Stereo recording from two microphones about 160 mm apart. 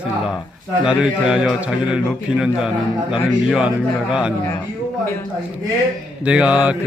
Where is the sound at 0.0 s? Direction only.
5° right (ahead or behind).